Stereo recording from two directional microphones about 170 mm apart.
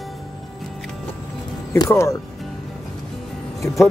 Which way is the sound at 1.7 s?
20° left (ahead or behind).